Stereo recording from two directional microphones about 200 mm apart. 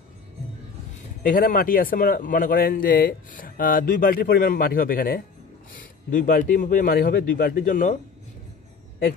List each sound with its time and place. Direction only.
1.2 s a man's voice: 45° left (ahead or behind)